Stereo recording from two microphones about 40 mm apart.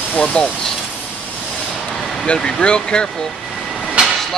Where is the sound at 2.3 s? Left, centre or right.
Left.